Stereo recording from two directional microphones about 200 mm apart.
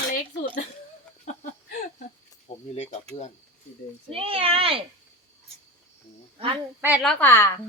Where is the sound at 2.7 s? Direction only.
35° left (ahead or behind).